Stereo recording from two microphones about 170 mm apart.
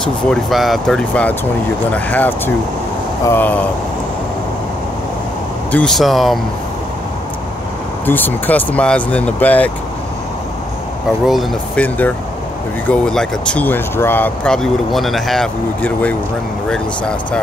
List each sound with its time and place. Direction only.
0.0 s speech: centre (ahead or behind)
5.7 s speech: 5° left (ahead or behind)
8.1 s speech: 10° left (ahead or behind)
11.2 s speech: centre (ahead or behind)
12.8 s speech: 5° left (ahead or behind)